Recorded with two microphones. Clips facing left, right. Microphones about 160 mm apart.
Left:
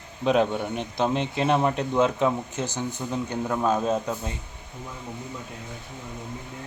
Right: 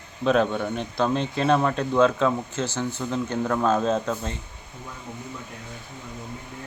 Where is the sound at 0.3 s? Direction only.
15° left (ahead or behind).